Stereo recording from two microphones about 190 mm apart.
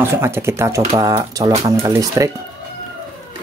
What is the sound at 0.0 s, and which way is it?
Speech, 10° right (ahead or behind).